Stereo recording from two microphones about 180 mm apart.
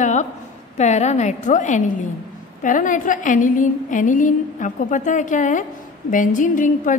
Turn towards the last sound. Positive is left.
turn(degrees=45)  # may be behind; listen again after turning